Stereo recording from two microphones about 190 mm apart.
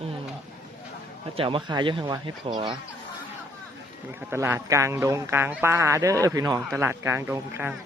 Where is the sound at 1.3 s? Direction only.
30° right (ahead or behind).